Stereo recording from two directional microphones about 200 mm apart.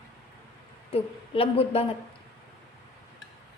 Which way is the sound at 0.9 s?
30° left (ahead or behind).